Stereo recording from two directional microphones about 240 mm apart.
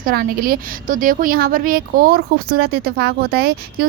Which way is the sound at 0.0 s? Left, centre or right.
Right.